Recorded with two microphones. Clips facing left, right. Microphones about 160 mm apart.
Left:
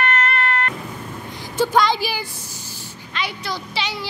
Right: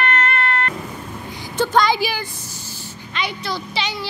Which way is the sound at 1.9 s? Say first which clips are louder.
Right 2 dB; centre (ahead or behind).